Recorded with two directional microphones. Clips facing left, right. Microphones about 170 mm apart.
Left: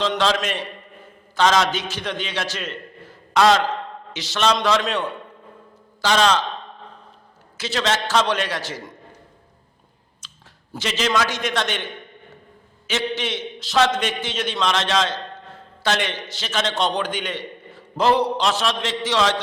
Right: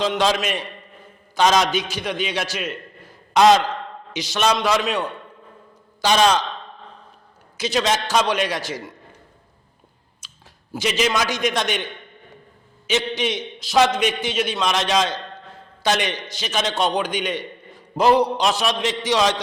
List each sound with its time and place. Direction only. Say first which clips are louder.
0.0 s a man's voice: right 1 dB; 15° right (ahead or behind)
7.5 s a man's voice: right 2 dB; 15° right (ahead or behind)
10.2 s a man's voice: even; 10° right (ahead or behind)
12.9 s a man's voice: right 2 dB; 15° right (ahead or behind)